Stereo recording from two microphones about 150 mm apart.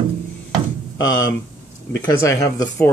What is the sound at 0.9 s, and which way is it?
Speech, 25° left (ahead or behind).